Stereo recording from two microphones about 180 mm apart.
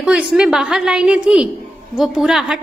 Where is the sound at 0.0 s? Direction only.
5° right (ahead or behind).